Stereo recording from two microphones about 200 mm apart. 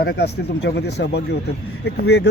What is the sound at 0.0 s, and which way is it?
Speech, 55° left (ahead or behind).